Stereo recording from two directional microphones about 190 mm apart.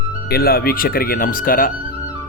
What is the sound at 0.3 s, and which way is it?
Speech, 55° left (ahead or behind).